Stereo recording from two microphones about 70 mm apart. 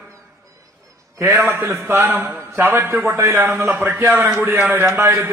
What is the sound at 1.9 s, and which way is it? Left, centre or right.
A man's voice, right.